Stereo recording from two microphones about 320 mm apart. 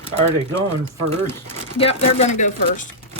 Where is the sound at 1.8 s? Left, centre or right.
Centre.